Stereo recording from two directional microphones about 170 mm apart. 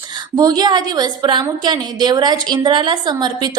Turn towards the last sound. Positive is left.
turn(degrees=-25)  # may be behind; listen again after turning